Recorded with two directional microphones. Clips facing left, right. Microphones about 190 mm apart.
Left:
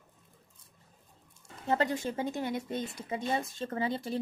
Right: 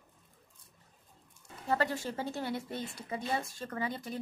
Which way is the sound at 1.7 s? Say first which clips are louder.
Left 2 dB; 20° left (ahead or behind).